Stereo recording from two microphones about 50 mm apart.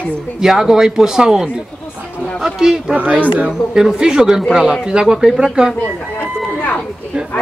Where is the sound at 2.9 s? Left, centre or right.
Right.